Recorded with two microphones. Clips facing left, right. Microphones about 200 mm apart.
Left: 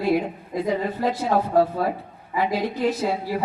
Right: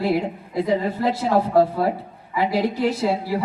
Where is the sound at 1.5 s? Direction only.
35° right (ahead or behind).